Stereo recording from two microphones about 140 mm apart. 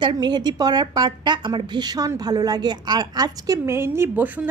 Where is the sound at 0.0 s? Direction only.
30° right (ahead or behind).